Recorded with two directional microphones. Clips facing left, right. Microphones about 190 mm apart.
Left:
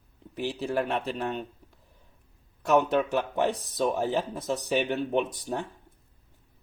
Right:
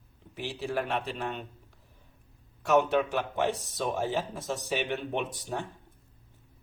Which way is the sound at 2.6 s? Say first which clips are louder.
Left 1 dB; 40° left (ahead or behind).